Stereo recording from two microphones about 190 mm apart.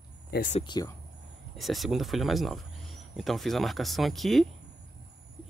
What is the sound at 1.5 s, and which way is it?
Speech, centre (ahead or behind).